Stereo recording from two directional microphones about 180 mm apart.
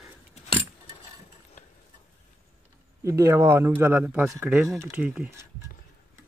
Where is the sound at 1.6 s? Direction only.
45° left (ahead or behind).